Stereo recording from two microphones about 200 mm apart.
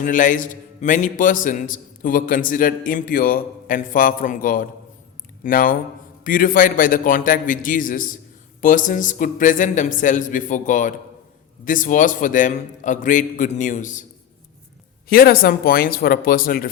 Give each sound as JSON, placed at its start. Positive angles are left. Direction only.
{"t": 0.0, "sound": "a man's voice", "side_deg": 40}
{"t": 15.1, "sound": "a man's voice", "side_deg": 45}